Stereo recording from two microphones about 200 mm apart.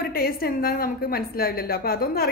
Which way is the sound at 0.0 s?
45° left (ahead or behind).